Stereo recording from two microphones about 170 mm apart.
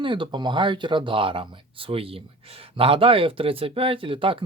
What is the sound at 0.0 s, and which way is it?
Speech, 30° right (ahead or behind).